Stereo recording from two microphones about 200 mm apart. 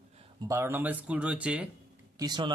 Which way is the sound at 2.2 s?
20° right (ahead or behind).